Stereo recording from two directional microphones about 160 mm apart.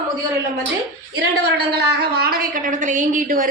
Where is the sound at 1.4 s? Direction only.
90° right.